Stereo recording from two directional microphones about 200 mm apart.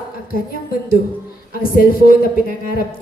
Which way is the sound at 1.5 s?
45° left (ahead or behind).